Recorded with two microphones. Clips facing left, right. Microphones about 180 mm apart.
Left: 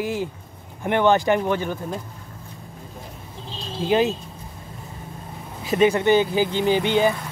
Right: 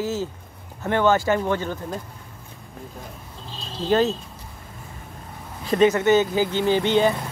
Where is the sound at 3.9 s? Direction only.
15° left (ahead or behind).